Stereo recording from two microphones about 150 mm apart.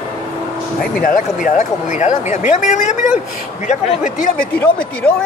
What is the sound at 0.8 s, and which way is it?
Speech, 70° left (ahead or behind).